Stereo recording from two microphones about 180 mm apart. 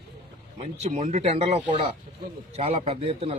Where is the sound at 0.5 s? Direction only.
40° right (ahead or behind).